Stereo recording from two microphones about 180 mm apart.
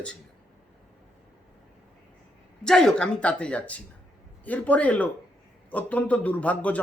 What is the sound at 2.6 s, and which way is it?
Speech, 5° left (ahead or behind).